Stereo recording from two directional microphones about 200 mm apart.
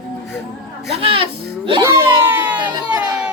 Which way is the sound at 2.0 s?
10° right (ahead or behind).